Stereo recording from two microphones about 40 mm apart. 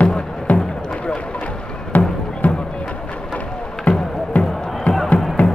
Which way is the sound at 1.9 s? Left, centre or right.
Left.